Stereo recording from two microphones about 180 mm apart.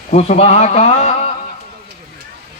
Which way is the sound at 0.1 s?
35° left (ahead or behind).